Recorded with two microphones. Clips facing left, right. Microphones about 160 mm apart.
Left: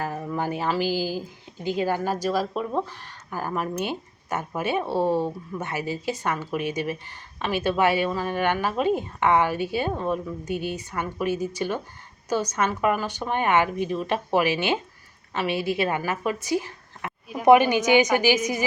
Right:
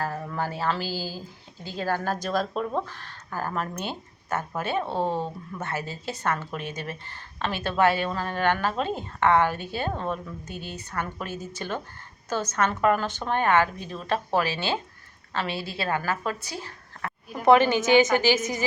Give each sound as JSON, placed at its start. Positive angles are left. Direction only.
{"t": 0.0, "sound": "speech", "side_deg": 15}